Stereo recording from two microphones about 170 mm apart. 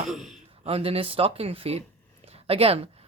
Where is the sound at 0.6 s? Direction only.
35° right (ahead or behind).